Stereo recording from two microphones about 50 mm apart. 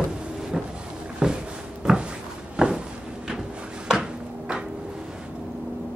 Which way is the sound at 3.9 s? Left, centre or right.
Centre.